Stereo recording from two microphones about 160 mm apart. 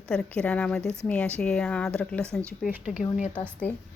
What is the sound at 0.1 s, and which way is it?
Speech, 5° left (ahead or behind).